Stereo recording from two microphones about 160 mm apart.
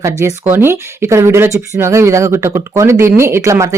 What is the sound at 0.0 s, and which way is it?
Speech, 20° right (ahead or behind).